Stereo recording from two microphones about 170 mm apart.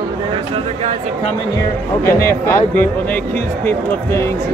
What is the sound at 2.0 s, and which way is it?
Speech, 15° left (ahead or behind).